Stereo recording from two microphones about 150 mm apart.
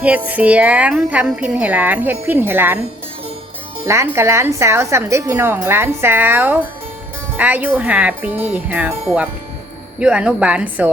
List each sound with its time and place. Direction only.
0.0 s a woman's voice: 10° right (ahead or behind)
3.8 s a woman's voice: 20° right (ahead or behind)